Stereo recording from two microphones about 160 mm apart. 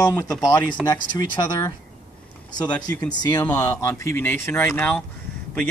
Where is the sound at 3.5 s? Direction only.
15° left (ahead or behind).